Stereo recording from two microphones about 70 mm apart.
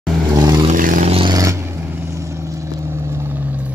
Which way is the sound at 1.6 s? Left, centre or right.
Right.